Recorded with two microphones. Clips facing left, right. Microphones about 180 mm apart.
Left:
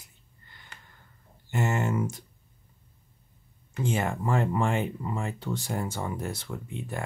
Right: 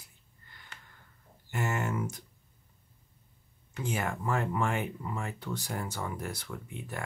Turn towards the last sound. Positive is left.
turn(degrees=25)  # may be behind; listen again after turning